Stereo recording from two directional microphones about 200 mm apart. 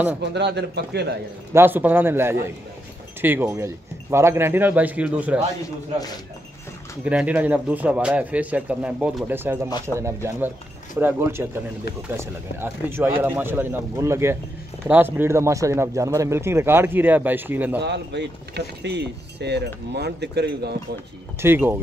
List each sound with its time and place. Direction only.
0.2 s speech: 60° right (ahead or behind)
1.5 s speech: 10° right (ahead or behind)
7.1 s speech: 5° right (ahead or behind)
17.7 s speech: 60° right (ahead or behind)
21.4 s speech: 10° right (ahead or behind)